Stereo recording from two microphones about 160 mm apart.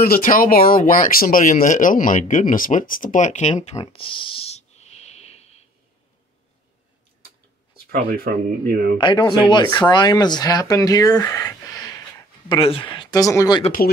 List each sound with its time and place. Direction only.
0.0 s speech: 65° left (ahead or behind); by 3.7 s 45° left (ahead or behind)
3.9 s a sound: 35° left (ahead or behind)
7.7 s speech: 75° right (ahead or behind)
8.9 s speech: 30° left (ahead or behind)
12.4 s speech: 35° left (ahead or behind)